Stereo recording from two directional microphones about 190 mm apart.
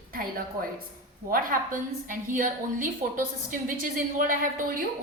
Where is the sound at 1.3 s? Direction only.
45° right (ahead or behind).